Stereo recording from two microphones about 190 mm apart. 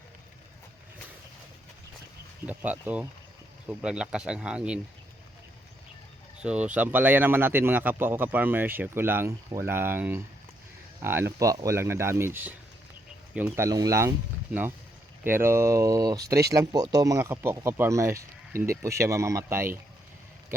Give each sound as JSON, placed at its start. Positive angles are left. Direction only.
{"t": 2.5, "sound": "a man's voice", "side_deg": -10}
{"t": 6.4, "sound": "a man's voice", "side_deg": -5}
{"t": 13.7, "sound": "a man's voice", "side_deg": -20}
{"t": 15.2, "sound": "a man's voice", "side_deg": -10}